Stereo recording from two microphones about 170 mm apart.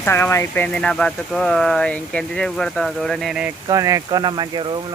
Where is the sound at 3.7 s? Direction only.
20° right (ahead or behind).